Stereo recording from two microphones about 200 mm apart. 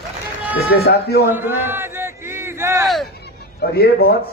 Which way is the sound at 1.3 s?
10° right (ahead or behind).